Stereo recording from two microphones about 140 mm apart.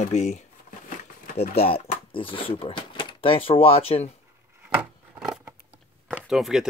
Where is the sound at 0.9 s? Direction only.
70° left (ahead or behind).